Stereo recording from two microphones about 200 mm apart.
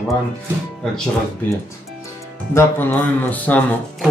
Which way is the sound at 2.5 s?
10° left (ahead or behind).